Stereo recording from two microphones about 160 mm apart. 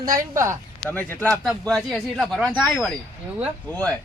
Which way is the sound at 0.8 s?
10° left (ahead or behind).